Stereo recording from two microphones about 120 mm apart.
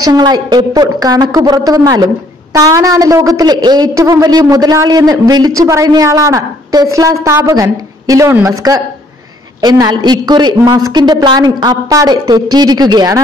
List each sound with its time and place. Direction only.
0.0 s a woman's voice: 35° right (ahead or behind)
9.6 s a woman's voice: 35° right (ahead or behind)